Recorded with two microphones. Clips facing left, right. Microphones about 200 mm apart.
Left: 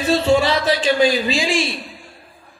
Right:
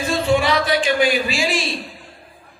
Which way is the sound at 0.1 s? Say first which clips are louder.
Left 2 dB; 25° left (ahead or behind).